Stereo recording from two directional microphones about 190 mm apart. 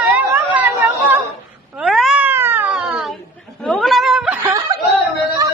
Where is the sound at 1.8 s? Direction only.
Centre (ahead or behind).